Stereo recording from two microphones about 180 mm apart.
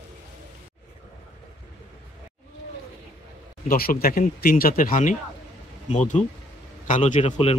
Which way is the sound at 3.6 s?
55° left (ahead or behind).